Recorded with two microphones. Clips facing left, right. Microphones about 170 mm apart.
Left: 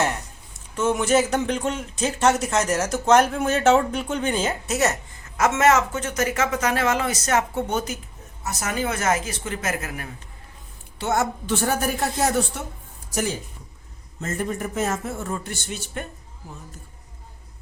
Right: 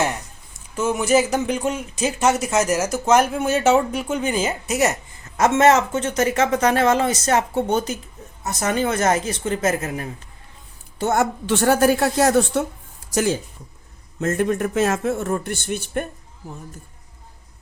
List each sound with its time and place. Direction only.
0.8 s speech: 5° right (ahead or behind)
5.4 s speech: 30° right (ahead or behind)
11.0 s a woman's voice: 50° right (ahead or behind)
11.4 s a woman's voice: 80° right
14.2 s speech: 70° right (ahead or behind); by 16.0 s 55° right (ahead or behind)